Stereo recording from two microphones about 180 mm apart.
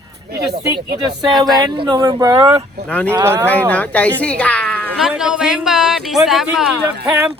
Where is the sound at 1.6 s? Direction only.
25° right (ahead or behind).